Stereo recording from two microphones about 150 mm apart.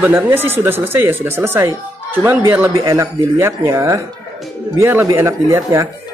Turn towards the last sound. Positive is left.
turn(degrees=-20)  # may be behind; listen again after turning